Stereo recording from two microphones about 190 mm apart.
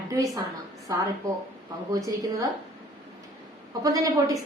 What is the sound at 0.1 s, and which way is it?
Speech, 15° right (ahead or behind).